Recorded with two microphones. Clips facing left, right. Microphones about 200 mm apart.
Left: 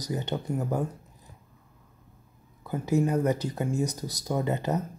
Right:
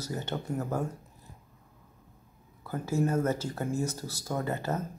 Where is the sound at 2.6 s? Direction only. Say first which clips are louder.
Left 4 dB; 20° left (ahead or behind).